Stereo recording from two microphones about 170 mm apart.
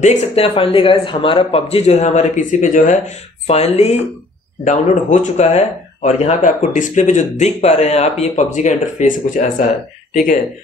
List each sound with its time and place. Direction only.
0.0 s a man's voice: 40° left (ahead or behind)